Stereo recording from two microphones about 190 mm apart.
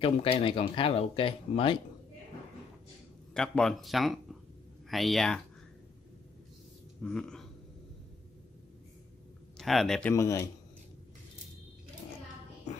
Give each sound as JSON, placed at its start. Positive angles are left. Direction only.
{"t": 0.0, "sound": "speech", "side_deg": 30}
{"t": 3.3, "sound": "speech", "side_deg": 5}
{"t": 7.0, "sound": "speech", "side_deg": 5}
{"t": 9.6, "sound": "speech", "side_deg": 0}
{"t": 10.1, "sound": "speech", "side_deg": 15}